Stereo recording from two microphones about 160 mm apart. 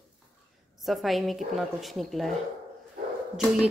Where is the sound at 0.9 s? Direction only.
Centre (ahead or behind).